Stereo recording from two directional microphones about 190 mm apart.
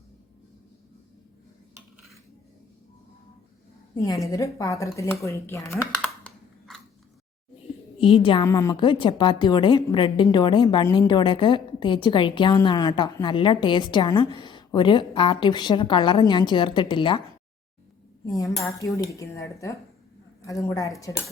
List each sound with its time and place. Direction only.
4.0 s speech: 15° left (ahead or behind)
7.9 s a woman's voice: 25° left (ahead or behind)
18.3 s speech: 20° left (ahead or behind)